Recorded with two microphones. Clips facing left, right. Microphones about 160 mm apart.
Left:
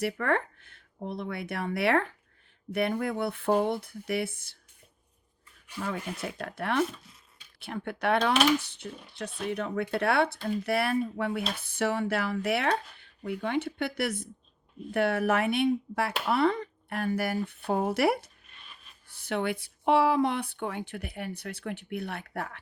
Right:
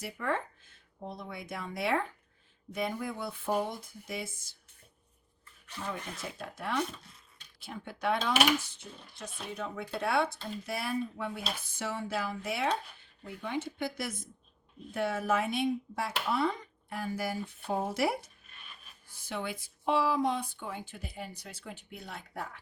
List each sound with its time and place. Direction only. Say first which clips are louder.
0.0 s speech: left 6 dB; 65° left (ahead or behind)
6.4 s speech: left 5 dB; 65° left (ahead or behind)